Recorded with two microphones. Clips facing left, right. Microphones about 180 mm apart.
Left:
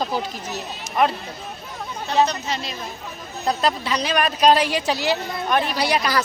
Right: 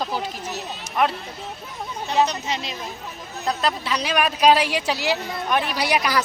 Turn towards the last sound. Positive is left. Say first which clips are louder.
# left 1 dB
turn(degrees=-15)  # may be behind; listen again after turning